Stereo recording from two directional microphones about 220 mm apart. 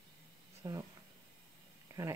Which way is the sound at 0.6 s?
15° right (ahead or behind).